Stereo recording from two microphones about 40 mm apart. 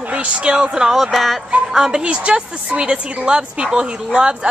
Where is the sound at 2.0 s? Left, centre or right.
Right.